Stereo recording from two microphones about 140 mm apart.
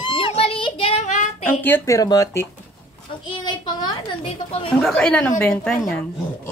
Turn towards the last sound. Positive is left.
turn(degrees=5)  # may be behind; listen again after turning